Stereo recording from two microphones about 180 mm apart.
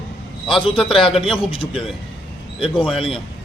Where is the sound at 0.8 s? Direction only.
Centre (ahead or behind).